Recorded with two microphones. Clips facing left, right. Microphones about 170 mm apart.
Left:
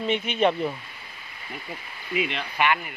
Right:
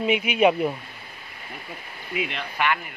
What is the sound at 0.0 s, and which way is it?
Speech, 10° right (ahead or behind).